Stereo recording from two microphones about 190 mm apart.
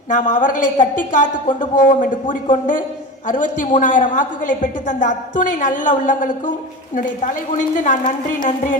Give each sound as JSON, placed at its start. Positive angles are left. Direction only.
{"t": 0.1, "sound": "a woman's voice", "side_deg": 40}